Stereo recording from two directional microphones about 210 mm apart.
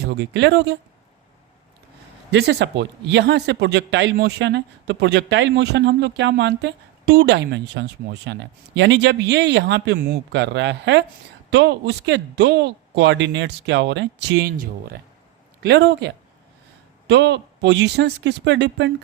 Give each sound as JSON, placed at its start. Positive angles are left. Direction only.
{"t": 0.1, "sound": "a man's voice", "side_deg": -55}
{"t": 2.3, "sound": "a man's voice", "side_deg": -55}